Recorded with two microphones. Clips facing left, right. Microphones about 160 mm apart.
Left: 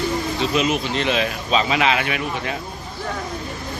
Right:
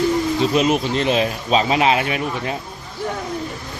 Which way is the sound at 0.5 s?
40° right (ahead or behind).